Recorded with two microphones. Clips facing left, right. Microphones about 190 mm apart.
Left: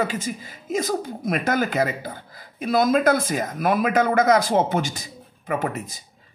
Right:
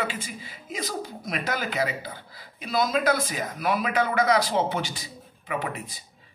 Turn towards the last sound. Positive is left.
turn(degrees=45)  # may be behind; listen again after turning